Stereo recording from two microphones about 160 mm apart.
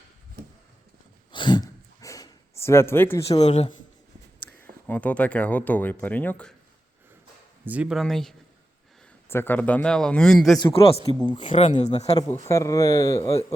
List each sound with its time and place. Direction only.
1.3 s a sound: 30° left (ahead or behind)
3.2 s a man's voice: 40° left (ahead or behind)
4.9 s speech: 10° left (ahead or behind)
7.6 s speech: 10° right (ahead or behind)
9.3 s speech: 10° left (ahead or behind)
10.6 s a man's voice: 35° left (ahead or behind)
11.7 s a man's voice: 45° left (ahead or behind)
12.3 s speech: 20° left (ahead or behind)